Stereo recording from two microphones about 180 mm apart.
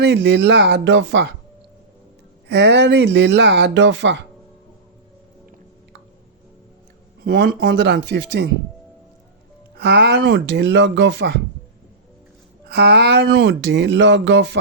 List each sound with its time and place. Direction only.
0.0 s speech: 70° right (ahead or behind)
2.5 s speech: 75° right (ahead or behind); by 4.2 s 90° right
7.3 s speech: 65° right (ahead or behind)
9.7 s speech: 70° right (ahead or behind)
12.6 s speech: 70° right (ahead or behind)